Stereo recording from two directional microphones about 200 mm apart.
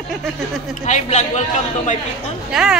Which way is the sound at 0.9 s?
35° left (ahead or behind).